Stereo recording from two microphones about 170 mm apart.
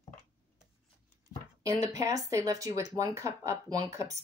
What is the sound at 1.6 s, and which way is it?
Speech, 20° right (ahead or behind).